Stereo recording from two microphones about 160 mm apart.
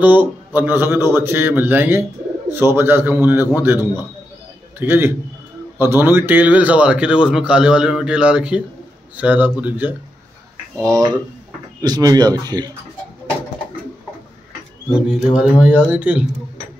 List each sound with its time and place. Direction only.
0.0 s a man's voice: 10° right (ahead or behind)
10.8 s speech: 25° right (ahead or behind)
15.0 s a man's voice: 5° right (ahead or behind)